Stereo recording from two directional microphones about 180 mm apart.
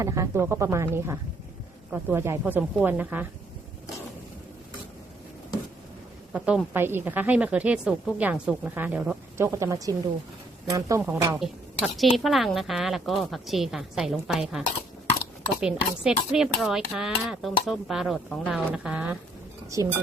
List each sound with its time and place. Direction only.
0.0 s a woman's voice: 15° right (ahead or behind)
6.3 s a woman's voice: 5° right (ahead or behind)
11.3 s dishes: centre (ahead or behind)
15.6 s dishes: 5° right (ahead or behind)
19.7 s a woman's voice: 15° right (ahead or behind)